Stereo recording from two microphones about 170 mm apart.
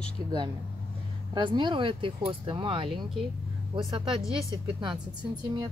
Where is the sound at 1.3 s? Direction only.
25° right (ahead or behind).